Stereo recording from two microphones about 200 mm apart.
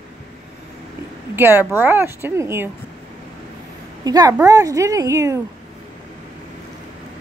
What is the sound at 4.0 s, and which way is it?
A woman's voice, 20° right (ahead or behind).